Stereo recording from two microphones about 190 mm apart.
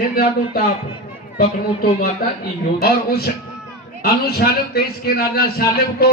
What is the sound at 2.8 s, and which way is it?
Speech, 55° left (ahead or behind).